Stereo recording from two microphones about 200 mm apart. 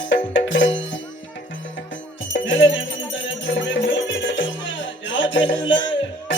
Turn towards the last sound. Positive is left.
turn(degrees=70)  # may be behind; listen again after turning